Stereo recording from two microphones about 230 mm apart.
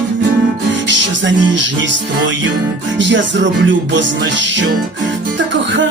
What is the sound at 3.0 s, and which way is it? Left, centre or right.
Music, right.